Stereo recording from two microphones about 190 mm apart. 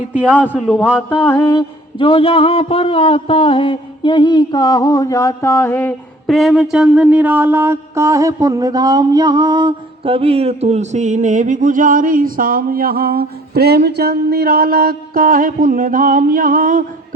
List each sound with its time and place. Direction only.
0.1 s a man's voice: 5° right (ahead or behind)
1.2 s music: 15° left (ahead or behind)
2.0 s a man's voice: 30° left (ahead or behind); by 5.9 s 10° left (ahead or behind)
6.2 s mantra: centre (ahead or behind); by 16.8 s 45° right (ahead or behind)